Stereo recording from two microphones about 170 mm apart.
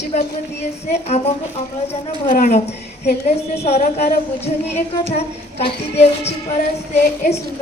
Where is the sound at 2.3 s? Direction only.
40° left (ahead or behind).